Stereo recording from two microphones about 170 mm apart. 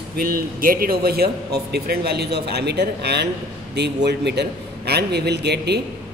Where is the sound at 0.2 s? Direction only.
60° right (ahead or behind).